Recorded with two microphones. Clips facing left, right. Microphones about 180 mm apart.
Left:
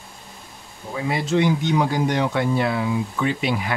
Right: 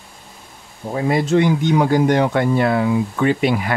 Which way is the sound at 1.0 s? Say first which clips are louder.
Right 5 dB; 50° right (ahead or behind).